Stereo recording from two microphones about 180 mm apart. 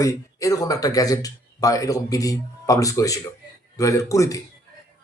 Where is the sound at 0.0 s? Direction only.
20° left (ahead or behind).